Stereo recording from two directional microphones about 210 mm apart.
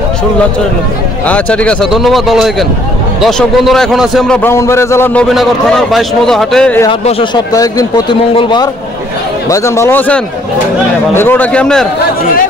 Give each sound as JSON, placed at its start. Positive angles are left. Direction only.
{"t": 1.2, "sound": "a man's voice", "side_deg": 5}
{"t": 5.3, "sound": "a man's voice", "side_deg": 0}
{"t": 6.9, "sound": "a man's voice", "side_deg": 25}